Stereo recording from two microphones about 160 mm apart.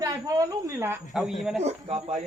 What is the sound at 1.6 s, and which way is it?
Speech, 45° right (ahead or behind).